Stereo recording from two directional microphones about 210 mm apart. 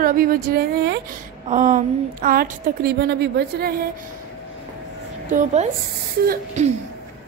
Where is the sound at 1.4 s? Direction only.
40° right (ahead or behind).